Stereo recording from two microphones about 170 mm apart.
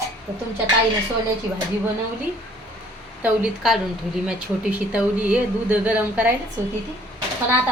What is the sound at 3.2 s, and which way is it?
A woman's voice, 5° right (ahead or behind).